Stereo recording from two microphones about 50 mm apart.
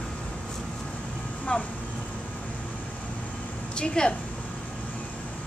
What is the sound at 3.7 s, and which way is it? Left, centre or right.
Speech, centre.